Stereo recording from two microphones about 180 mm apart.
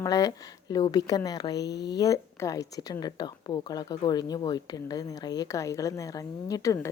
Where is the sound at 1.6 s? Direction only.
70° left (ahead or behind).